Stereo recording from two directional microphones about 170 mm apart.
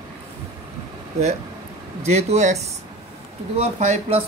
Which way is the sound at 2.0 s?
40° right (ahead or behind).